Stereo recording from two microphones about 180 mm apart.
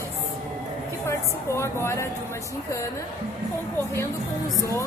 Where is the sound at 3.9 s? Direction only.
15° left (ahead or behind).